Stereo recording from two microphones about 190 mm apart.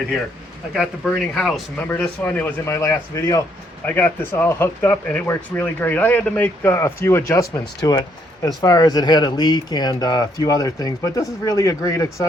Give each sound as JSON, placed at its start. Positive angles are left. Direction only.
{"t": 0.7, "sound": "speech", "side_deg": 0}